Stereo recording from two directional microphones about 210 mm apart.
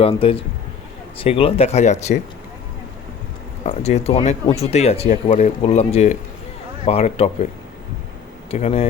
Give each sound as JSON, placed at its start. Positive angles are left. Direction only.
{"t": 0.0, "sound": "speech", "side_deg": 25}
{"t": 3.7, "sound": "speech", "side_deg": 30}
{"t": 8.4, "sound": "speech", "side_deg": 30}